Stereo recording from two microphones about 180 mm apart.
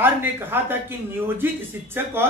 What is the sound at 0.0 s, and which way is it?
Speech, 10° right (ahead or behind).